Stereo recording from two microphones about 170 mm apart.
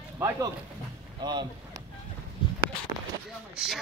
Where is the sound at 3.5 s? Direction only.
5° right (ahead or behind).